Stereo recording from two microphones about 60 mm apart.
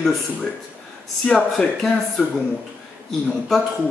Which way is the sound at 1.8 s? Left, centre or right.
Centre.